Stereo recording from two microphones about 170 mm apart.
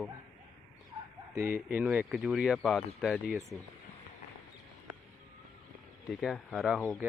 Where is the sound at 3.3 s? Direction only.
15° right (ahead or behind).